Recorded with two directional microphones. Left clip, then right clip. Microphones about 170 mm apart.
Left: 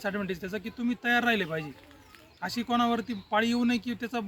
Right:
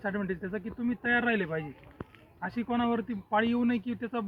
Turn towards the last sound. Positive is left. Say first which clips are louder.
# left 1 dB
turn(degrees=20)  # may be behind; listen again after turning